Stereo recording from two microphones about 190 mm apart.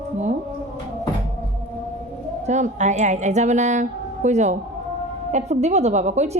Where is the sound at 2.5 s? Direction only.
40° right (ahead or behind).